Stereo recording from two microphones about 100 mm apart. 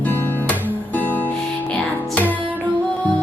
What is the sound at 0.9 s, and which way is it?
Music, 15° left (ahead or behind).